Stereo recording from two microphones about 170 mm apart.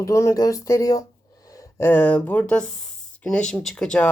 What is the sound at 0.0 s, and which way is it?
Speech, 15° left (ahead or behind).